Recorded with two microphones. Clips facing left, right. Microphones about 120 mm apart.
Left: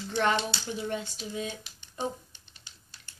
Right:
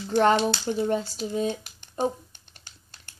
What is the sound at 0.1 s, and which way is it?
A child's voice, 40° right (ahead or behind).